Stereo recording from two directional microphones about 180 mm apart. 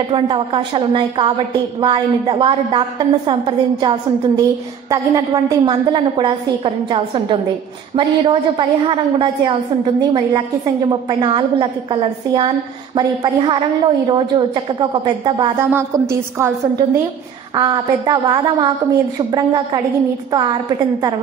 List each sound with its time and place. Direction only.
0.1 s a woman's voice: 30° right (ahead or behind)
15.7 s a woman's voice: 15° right (ahead or behind)